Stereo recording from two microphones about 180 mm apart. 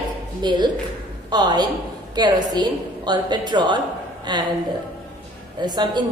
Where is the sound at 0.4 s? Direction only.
25° right (ahead or behind).